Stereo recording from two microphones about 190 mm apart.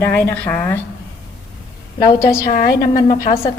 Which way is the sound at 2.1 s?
15° left (ahead or behind).